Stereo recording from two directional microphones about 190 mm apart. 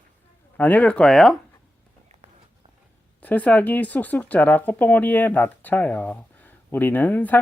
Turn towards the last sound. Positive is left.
turn(degrees=10)  # may be behind; listen again after turning